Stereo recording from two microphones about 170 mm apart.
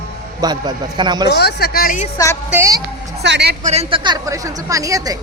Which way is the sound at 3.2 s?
85° right.